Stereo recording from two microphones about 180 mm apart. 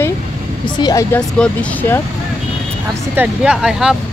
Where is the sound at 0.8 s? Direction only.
20° left (ahead or behind).